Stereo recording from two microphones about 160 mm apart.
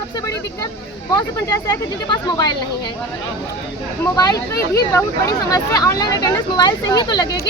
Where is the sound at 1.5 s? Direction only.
20° left (ahead or behind).